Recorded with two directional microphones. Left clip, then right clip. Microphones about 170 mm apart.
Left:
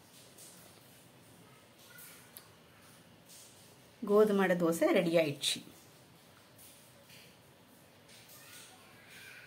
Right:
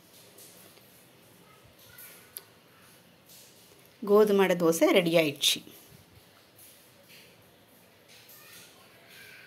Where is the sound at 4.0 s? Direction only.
20° right (ahead or behind).